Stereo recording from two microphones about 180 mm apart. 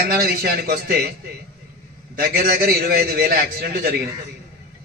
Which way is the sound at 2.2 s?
55° right (ahead or behind).